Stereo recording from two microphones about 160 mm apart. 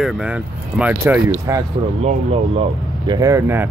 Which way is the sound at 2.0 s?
40° right (ahead or behind).